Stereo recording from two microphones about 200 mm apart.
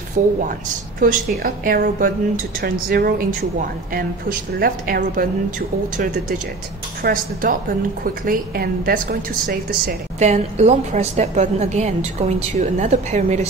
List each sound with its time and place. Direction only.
0.2 s a woman's voice: 40° right (ahead or behind)
7.0 s speech: 45° right (ahead or behind)
10.1 s a woman's voice: 35° right (ahead or behind)